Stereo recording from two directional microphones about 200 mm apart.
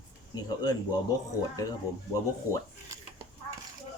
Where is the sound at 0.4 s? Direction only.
20° left (ahead or behind).